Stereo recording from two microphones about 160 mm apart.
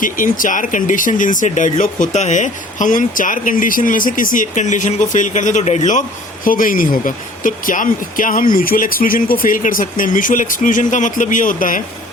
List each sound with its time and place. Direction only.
0.0 s speech: 55° left (ahead or behind)